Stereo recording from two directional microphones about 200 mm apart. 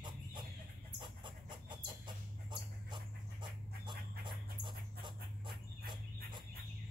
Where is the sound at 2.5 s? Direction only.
25° right (ahead or behind).